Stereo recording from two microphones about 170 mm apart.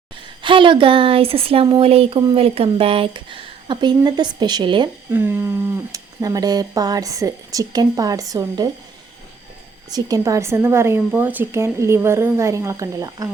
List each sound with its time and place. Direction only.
0.4 s speech: 30° right (ahead or behind)
5.1 s speech: 15° right (ahead or behind)
9.9 s speech: 20° right (ahead or behind)